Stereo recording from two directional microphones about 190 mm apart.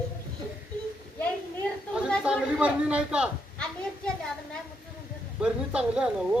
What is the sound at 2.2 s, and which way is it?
Speech, 5° right (ahead or behind).